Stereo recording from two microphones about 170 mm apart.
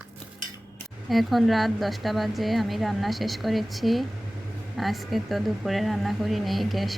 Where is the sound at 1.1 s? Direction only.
Centre (ahead or behind).